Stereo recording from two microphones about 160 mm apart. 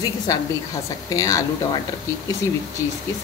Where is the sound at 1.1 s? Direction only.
20° left (ahead or behind).